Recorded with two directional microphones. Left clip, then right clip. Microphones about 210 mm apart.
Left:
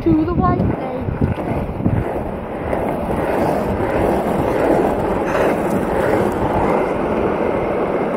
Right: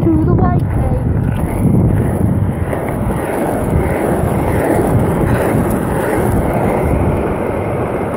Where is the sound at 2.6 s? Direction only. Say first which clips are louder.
Left 2 dB; 45° right (ahead or behind).